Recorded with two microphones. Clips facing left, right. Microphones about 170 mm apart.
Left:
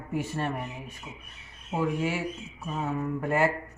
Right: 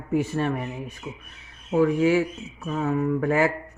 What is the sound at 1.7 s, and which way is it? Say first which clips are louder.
A man's voice: right 9 dB; 90° right.